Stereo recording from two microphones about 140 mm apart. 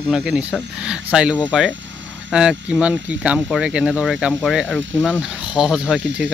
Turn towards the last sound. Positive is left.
turn(degrees=-5)  # may be behind; listen again after turning